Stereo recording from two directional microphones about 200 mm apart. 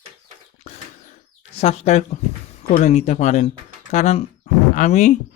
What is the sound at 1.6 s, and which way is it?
Speech, 35° left (ahead or behind).